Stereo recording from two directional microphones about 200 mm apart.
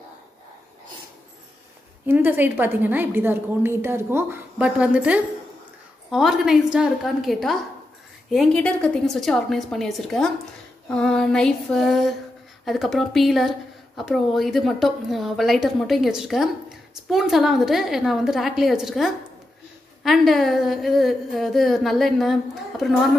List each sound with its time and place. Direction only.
2.0 s a woman's voice: 10° right (ahead or behind)